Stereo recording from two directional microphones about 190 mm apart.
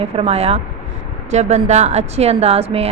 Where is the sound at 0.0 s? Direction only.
30° right (ahead or behind).